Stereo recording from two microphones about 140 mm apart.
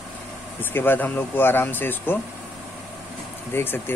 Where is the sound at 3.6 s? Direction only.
15° left (ahead or behind).